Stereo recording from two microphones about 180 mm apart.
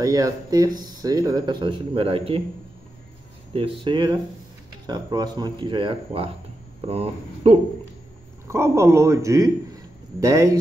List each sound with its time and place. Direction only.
0.0 s speech: 20° right (ahead or behind)
3.5 s speech: 30° right (ahead or behind)
8.5 s speech: 15° right (ahead or behind)